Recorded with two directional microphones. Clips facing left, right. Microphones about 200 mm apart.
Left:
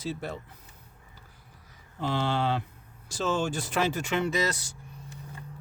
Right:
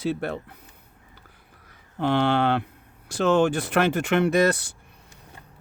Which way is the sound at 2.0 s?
65° right (ahead or behind).